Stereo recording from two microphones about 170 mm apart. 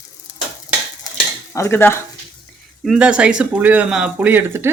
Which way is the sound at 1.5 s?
15° left (ahead or behind).